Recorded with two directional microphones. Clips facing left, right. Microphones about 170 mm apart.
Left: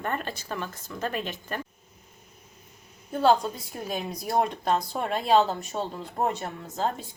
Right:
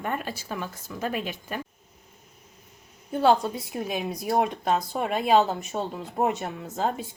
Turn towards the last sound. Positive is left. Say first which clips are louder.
# right 1 dB
turn(degrees=-5)  # may be behind; listen again after turning